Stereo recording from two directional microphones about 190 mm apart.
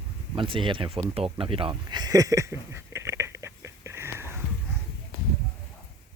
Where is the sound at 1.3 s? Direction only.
30° right (ahead or behind); by 4.3 s 15° right (ahead or behind).